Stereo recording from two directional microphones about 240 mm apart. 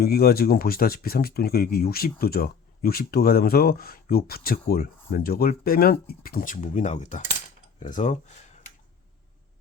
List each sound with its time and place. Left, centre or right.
0.0 s speech: left